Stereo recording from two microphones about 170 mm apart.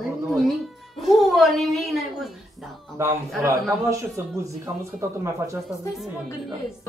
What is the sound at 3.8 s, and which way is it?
A man's voice, 20° right (ahead or behind).